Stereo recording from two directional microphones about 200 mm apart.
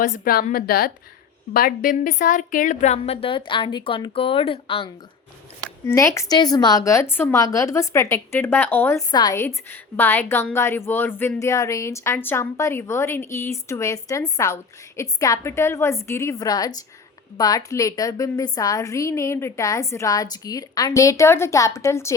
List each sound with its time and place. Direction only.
0.0 s a woman's voice: 45° left (ahead or behind)
5.8 s a woman's voice: 15° left (ahead or behind)